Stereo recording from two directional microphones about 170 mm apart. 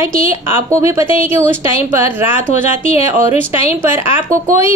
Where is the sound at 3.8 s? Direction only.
15° right (ahead or behind).